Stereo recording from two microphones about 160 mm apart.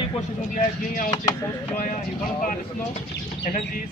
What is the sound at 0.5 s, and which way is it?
Speech, 60° left (ahead or behind).